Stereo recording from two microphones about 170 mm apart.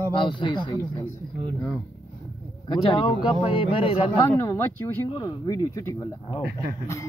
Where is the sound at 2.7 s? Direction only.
30° left (ahead or behind).